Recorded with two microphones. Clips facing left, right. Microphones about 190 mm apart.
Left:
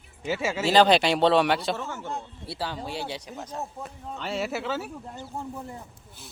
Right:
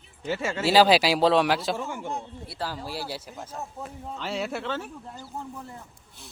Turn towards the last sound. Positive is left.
turn(degrees=20)  # may be behind; listen again after turning